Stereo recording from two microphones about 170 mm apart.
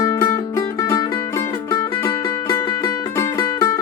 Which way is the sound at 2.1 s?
20° left (ahead or behind).